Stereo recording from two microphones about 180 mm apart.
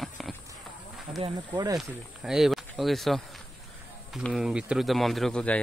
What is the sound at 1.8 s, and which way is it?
Speech, 5° right (ahead or behind).